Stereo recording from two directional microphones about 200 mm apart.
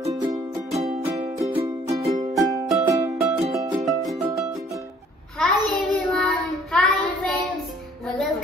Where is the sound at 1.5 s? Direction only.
30° right (ahead or behind).